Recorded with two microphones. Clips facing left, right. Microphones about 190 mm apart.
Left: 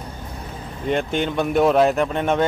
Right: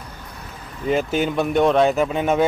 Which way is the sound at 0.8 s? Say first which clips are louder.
Right 2 dB; 5° right (ahead or behind).